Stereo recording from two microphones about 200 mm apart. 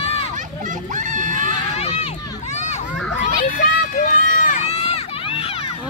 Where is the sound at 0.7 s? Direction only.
40° right (ahead or behind).